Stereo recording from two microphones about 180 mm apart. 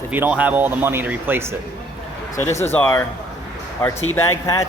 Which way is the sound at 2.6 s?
15° left (ahead or behind).